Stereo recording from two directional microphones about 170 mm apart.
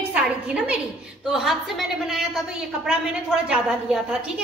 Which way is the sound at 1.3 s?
Centre (ahead or behind).